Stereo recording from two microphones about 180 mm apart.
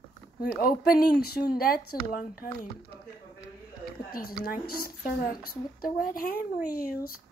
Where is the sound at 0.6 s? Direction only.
55° left (ahead or behind).